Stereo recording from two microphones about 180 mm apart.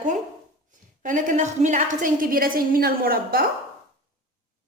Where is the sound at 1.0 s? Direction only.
45° right (ahead or behind).